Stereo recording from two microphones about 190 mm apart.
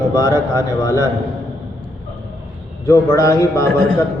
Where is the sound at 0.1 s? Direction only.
20° left (ahead or behind).